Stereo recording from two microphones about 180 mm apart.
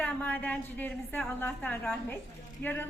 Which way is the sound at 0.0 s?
10° left (ahead or behind).